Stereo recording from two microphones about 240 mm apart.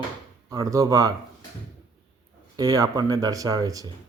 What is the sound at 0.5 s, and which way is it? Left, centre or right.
Speech, centre.